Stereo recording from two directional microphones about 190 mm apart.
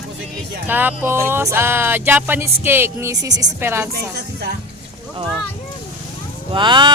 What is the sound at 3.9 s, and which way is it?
Speech, 55° right (ahead or behind).